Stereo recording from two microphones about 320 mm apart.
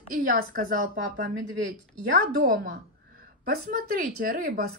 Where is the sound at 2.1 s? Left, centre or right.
Right.